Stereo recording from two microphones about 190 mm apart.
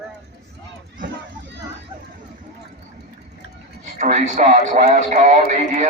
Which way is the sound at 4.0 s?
40° right (ahead or behind).